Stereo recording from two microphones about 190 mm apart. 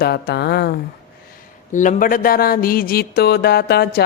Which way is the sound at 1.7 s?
40° left (ahead or behind).